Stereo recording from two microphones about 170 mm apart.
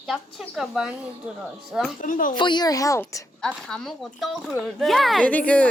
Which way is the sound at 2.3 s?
25° left (ahead or behind).